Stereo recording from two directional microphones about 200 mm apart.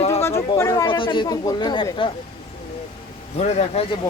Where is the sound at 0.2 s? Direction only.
15° left (ahead or behind).